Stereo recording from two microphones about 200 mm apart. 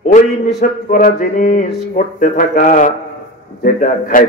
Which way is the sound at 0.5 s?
45° left (ahead or behind).